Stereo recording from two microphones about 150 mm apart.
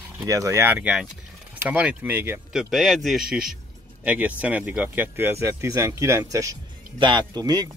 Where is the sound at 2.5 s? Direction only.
Centre (ahead or behind).